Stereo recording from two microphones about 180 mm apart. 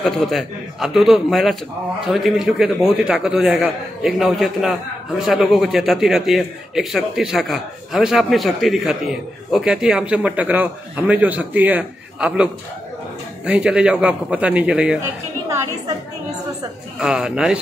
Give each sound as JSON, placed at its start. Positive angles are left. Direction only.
{"t": 0.0, "sound": "a man's voice", "side_deg": 0}
{"t": 13.5, "sound": "a man's voice", "side_deg": -5}
{"t": 17.0, "sound": "a man's voice", "side_deg": -5}